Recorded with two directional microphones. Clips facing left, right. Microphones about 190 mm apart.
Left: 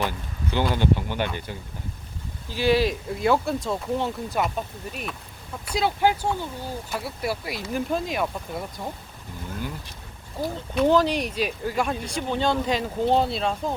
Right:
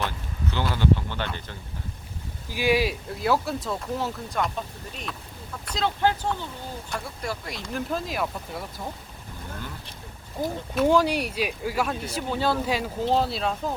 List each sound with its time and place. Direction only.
0.5 s speech: 15° left (ahead or behind)
2.5 s speech: 10° right (ahead or behind)
3.1 s speech: centre (ahead or behind)
5.6 s speech: 10° left (ahead or behind)
10.4 s speech: 15° right (ahead or behind)